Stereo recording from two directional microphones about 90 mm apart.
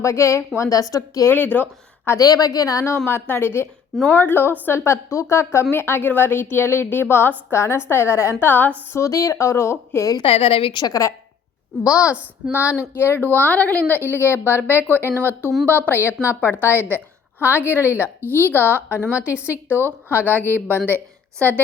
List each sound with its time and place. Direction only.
0.0 s a woman's voice: 30° left (ahead or behind)
1.3 s speech: 20° left (ahead or behind)
2.1 s a woman's voice: 45° left (ahead or behind); by 8.7 s 20° left (ahead or behind)
8.9 s a woman's voice: 35° left (ahead or behind)
10.2 s a woman's voice: 90° left
10.8 s a woman's voice: 45° left (ahead or behind); by 15.1 s 25° left (ahead or behind)
15.1 s speech: 25° right (ahead or behind)
15.6 s a woman's voice: 20° left (ahead or behind)
17.9 s a woman's voice: 15° right (ahead or behind)
18.3 s a woman's voice: 25° left (ahead or behind)